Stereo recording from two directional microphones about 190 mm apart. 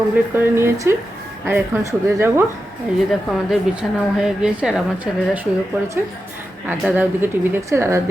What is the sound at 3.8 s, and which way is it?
A woman's voice, 5° left (ahead or behind).